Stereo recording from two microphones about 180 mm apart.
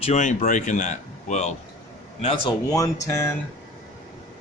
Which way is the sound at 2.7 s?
15° left (ahead or behind).